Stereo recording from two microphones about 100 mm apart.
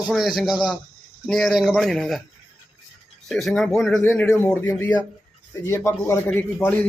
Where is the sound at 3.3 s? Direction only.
5° left (ahead or behind).